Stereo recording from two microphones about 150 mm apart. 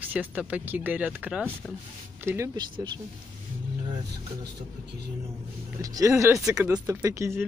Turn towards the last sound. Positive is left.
turn(degrees=-20)  # may be behind; listen again after turning